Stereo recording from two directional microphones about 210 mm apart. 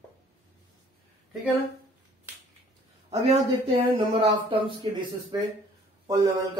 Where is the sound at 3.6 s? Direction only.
25° right (ahead or behind).